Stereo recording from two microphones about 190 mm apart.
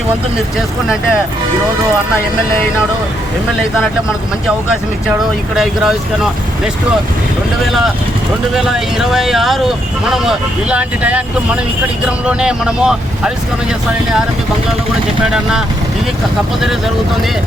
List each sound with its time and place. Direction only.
5.5 s speech: centre (ahead or behind)
8.5 s speech: centre (ahead or behind)